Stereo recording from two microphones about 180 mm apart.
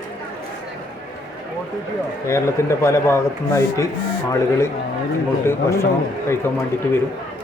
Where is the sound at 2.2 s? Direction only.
15° left (ahead or behind).